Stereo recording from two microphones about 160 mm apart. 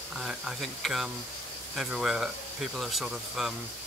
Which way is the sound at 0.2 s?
Centre (ahead or behind).